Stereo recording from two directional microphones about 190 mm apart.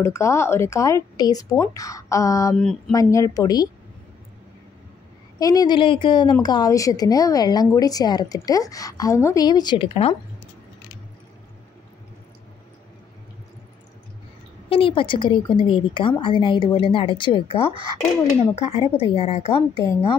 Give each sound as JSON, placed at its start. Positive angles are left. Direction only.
{"t": 0.0, "sound": "a woman's voice", "side_deg": 15}
{"t": 2.5, "sound": "speech", "side_deg": 5}
{"t": 2.9, "sound": "a woman's voice", "side_deg": 15}
{"t": 5.4, "sound": "a woman's voice", "side_deg": 20}
{"t": 14.7, "sound": "a woman's voice", "side_deg": 30}